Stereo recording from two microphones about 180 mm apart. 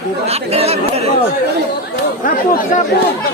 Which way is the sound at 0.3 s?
35° right (ahead or behind).